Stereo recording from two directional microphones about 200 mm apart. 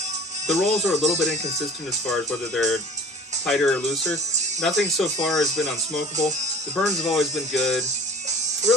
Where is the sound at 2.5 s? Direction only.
Centre (ahead or behind).